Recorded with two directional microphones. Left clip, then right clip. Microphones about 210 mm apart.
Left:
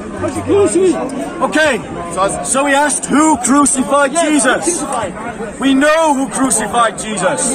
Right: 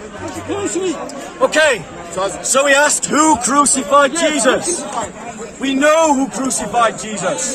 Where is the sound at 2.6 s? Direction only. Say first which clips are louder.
Even; 50° right (ahead or behind).